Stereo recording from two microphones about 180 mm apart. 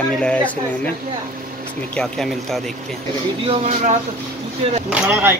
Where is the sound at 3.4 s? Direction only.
40° right (ahead or behind).